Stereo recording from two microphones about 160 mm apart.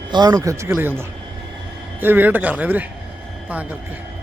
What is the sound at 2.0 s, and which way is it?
Speech, 10° right (ahead or behind).